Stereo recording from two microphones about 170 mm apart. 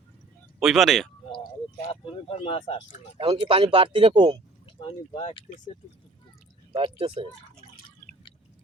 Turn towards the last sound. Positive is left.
turn(degrees=-30)  # may be behind; listen again after turning